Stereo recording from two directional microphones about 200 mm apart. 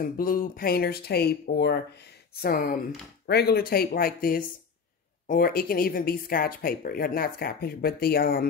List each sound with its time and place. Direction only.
0.0 s speech: 45° left (ahead or behind)